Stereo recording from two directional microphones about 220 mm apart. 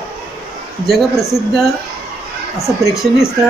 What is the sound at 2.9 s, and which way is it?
Speech, centre (ahead or behind).